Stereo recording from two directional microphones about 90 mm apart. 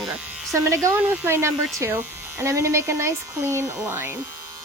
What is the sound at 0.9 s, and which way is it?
Speech, 20° right (ahead or behind).